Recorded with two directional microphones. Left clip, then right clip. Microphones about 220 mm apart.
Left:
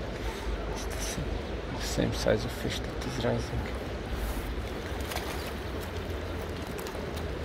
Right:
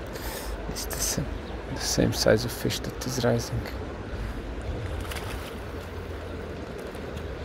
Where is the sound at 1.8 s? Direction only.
30° right (ahead or behind).